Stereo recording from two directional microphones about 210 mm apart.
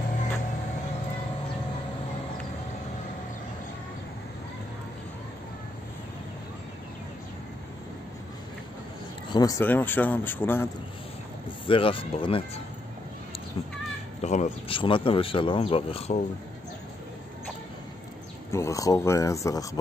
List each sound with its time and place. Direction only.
9.3 s speech: 15° left (ahead or behind)
11.6 s speech: 25° left (ahead or behind)
14.2 s speech: 35° left (ahead or behind)
18.5 s speech: 15° left (ahead or behind)